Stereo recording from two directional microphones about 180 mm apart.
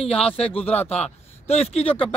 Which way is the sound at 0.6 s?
10° left (ahead or behind).